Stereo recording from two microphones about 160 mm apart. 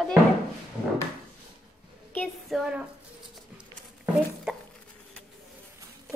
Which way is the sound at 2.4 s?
5° right (ahead or behind).